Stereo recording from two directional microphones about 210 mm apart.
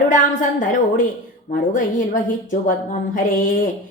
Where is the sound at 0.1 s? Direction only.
40° left (ahead or behind).